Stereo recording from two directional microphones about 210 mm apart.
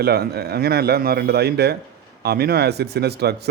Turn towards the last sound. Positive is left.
turn(degrees=-50)  # may be behind; listen again after turning